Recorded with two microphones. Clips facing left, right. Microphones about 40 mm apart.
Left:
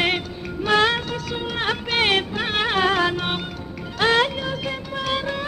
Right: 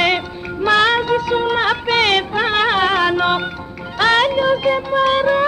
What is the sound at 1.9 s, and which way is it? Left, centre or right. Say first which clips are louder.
Music: right 4 dB; right.